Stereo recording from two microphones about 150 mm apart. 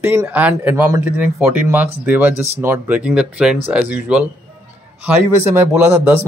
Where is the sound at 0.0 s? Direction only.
15° right (ahead or behind).